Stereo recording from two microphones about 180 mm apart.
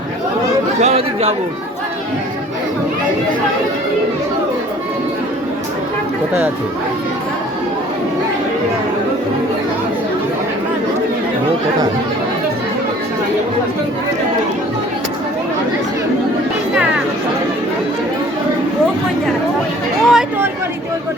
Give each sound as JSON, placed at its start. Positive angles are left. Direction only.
{"t": 0.8, "sound": "speech", "side_deg": -35}
{"t": 20.1, "sound": "speech", "side_deg": -5}